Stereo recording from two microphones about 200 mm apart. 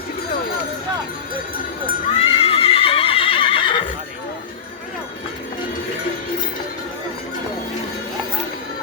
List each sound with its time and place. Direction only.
2.1 s neigh: 30° left (ahead or behind)